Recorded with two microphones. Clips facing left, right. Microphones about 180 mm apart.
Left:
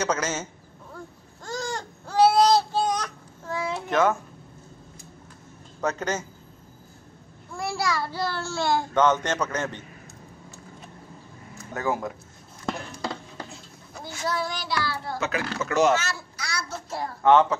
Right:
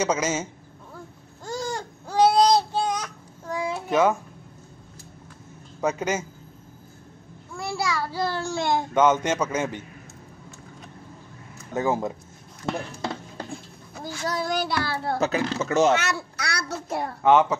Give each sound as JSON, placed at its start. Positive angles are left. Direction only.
{"t": 0.0, "sound": "speech", "side_deg": -10}
{"t": 1.4, "sound": "baby cry", "side_deg": -10}
{"t": 3.7, "sound": "a sound", "side_deg": -10}
{"t": 5.8, "sound": "speech", "side_deg": -10}
{"t": 7.5, "sound": "a child's voice", "side_deg": -5}
{"t": 8.2, "sound": "speech", "side_deg": -15}
{"t": 11.7, "sound": "speech", "side_deg": -20}
{"t": 14.0, "sound": "a child's voice", "side_deg": -40}
{"t": 15.1, "sound": "speech", "side_deg": -35}
{"t": 15.4, "sound": "speech", "side_deg": -25}
{"t": 16.0, "sound": "a child's voice", "side_deg": -65}
{"t": 17.2, "sound": "speech", "side_deg": -10}